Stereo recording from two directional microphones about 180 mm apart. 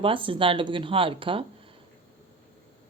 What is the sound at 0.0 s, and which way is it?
Speech, 30° right (ahead or behind).